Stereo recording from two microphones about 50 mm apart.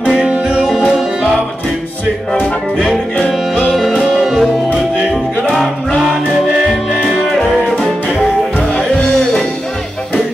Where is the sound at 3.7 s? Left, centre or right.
Centre.